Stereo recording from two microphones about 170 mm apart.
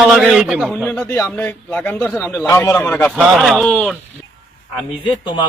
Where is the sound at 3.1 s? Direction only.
Centre (ahead or behind).